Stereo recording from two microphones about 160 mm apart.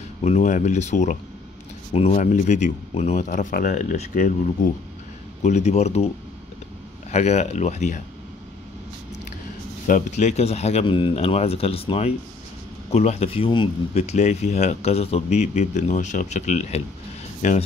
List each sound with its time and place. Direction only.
0.2 s speech: 45° left (ahead or behind)
5.4 s speech: 45° left (ahead or behind)
7.1 s speech: 45° left (ahead or behind)
9.8 s speech: 50° left (ahead or behind); by 13.7 s 35° left (ahead or behind)
13.9 s speech: 45° left (ahead or behind)